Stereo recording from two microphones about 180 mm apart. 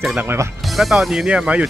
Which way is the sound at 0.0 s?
5° right (ahead or behind).